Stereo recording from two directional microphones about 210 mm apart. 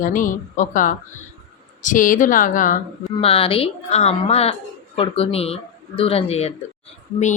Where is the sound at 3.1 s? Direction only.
25° left (ahead or behind).